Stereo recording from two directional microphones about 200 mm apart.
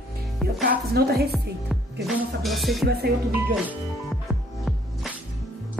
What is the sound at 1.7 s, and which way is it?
Music, centre (ahead or behind).